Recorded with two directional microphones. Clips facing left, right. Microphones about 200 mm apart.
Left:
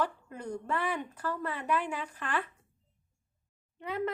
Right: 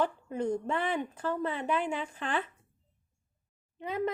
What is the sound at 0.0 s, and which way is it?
A woman's voice, 25° right (ahead or behind).